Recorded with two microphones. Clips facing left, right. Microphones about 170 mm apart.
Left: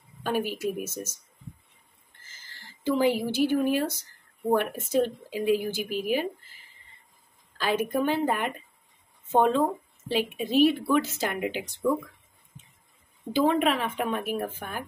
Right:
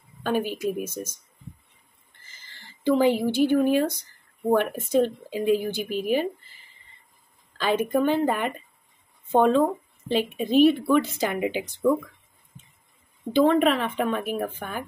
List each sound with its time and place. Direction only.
0.2 s a woman's voice: 5° left (ahead or behind)
2.4 s a woman's voice: 10° left (ahead or behind)
7.5 s a woman's voice: 5° left (ahead or behind)
10.3 s speech: 50° right (ahead or behind)
11.0 s a woman's voice: centre (ahead or behind)
13.3 s a woman's voice: 10° left (ahead or behind)